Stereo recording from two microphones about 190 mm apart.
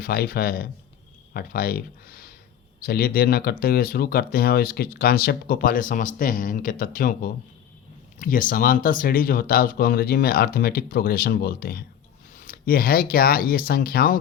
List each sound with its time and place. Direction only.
0.0 s speech: 55° left (ahead or behind)